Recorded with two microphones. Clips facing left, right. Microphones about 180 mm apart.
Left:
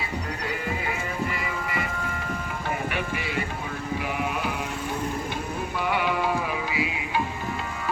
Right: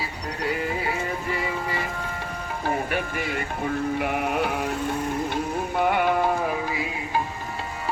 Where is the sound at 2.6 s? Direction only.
45° right (ahead or behind).